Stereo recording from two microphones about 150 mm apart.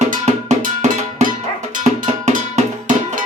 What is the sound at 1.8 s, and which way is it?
Music, 55° right (ahead or behind).